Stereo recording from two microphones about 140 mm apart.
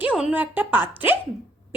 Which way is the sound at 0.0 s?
5° right (ahead or behind).